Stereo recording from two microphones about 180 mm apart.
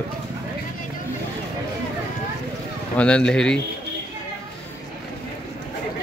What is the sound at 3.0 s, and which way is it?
Speech, 5° left (ahead or behind).